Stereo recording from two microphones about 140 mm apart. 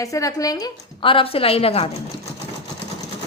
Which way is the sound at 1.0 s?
40° left (ahead or behind).